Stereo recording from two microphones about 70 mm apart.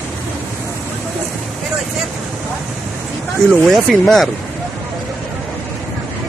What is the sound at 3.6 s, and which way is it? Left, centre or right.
Speech, centre.